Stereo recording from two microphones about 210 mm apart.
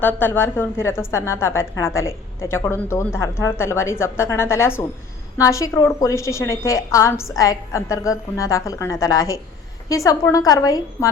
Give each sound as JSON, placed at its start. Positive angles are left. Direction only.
{"t": 0.0, "sound": "a woman's voice", "side_deg": 10}